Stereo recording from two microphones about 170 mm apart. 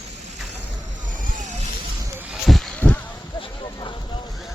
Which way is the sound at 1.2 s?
50° right (ahead or behind).